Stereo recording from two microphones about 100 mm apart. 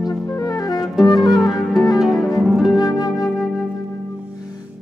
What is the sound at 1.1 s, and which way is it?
Music, 40° left (ahead or behind).